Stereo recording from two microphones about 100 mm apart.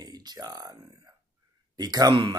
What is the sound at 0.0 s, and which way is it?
Speech, 40° right (ahead or behind).